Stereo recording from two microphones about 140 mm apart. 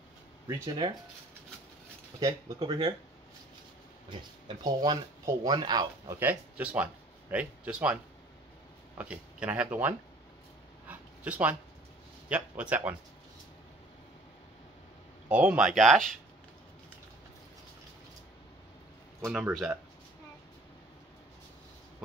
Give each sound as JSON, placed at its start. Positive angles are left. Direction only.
{"t": 0.5, "sound": "speech", "side_deg": -30}
{"t": 2.6, "sound": "speech", "side_deg": -35}
{"t": 4.6, "sound": "speech", "side_deg": -30}
{"t": 6.1, "sound": "speech", "side_deg": -10}
{"t": 10.9, "sound": "a sound", "side_deg": -10}
{"t": 12.3, "sound": "speech", "side_deg": -10}
{"t": 15.2, "sound": "speech", "side_deg": -5}
{"t": 19.2, "sound": "speech", "side_deg": -10}